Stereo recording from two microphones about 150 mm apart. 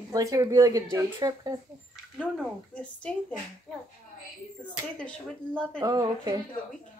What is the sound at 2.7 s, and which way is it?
Speech, 10° left (ahead or behind).